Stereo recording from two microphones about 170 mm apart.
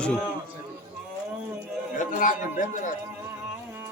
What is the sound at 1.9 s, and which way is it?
Speech, 50° left (ahead or behind).